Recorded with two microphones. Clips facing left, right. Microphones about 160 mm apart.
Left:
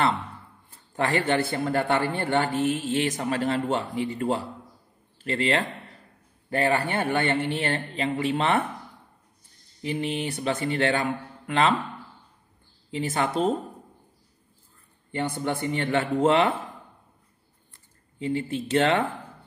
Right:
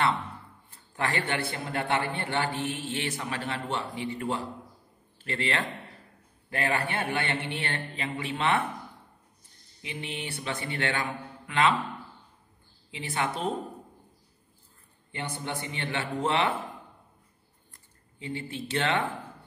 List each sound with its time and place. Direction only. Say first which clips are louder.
0.9 s speech: left 6 dB; 35° left (ahead or behind)
1.5 s speech: left 6 dB; 50° left (ahead or behind)
9.8 s speech: left 9 dB; 40° left (ahead or behind)
12.9 s speech: left 6 dB; 40° left (ahead or behind)
15.0 s speech: left 8 dB; 50° left (ahead or behind)
18.2 s speech: left 8 dB; 40° left (ahead or behind)